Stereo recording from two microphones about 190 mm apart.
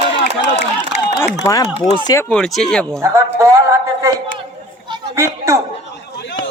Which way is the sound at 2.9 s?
15° right (ahead or behind).